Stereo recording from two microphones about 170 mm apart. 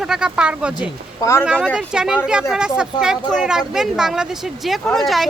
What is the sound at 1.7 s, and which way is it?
Speech, 5° right (ahead or behind).